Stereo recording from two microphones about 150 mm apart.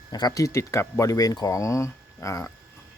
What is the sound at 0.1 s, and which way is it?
Speech, 25° left (ahead or behind).